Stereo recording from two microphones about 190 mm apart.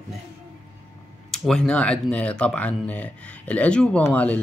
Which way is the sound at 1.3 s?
Centre (ahead or behind).